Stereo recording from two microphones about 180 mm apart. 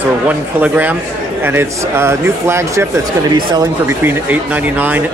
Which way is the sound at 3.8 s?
10° right (ahead or behind).